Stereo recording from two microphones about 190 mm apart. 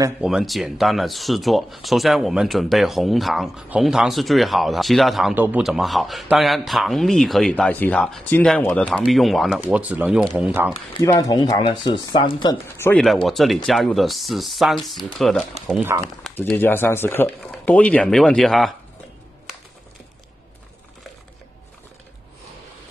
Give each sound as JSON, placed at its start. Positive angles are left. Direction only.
{"t": 0.2, "sound": "a man's voice", "side_deg": -5}
{"t": 11.0, "sound": "speech", "side_deg": 20}
{"t": 12.7, "sound": "speech", "side_deg": 10}
{"t": 13.0, "sound": "a man's voice", "side_deg": 0}
{"t": 15.7, "sound": "speech", "side_deg": -10}
{"t": 16.3, "sound": "speech", "side_deg": 10}